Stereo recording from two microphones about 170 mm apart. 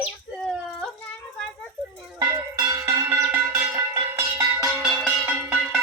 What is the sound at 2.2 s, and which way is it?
Music, 20° right (ahead or behind).